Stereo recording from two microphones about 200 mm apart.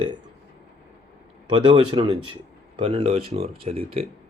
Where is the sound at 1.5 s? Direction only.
25° right (ahead or behind).